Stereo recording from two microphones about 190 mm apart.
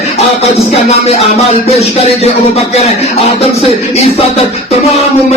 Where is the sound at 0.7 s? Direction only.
30° left (ahead or behind).